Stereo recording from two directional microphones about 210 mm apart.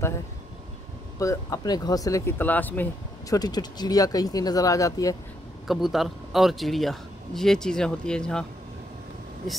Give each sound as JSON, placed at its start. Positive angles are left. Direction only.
{"t": 1.2, "sound": "speech", "side_deg": 15}
{"t": 5.7, "sound": "a man's voice", "side_deg": 0}